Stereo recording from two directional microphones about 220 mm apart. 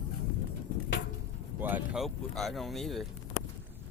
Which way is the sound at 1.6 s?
10° right (ahead or behind).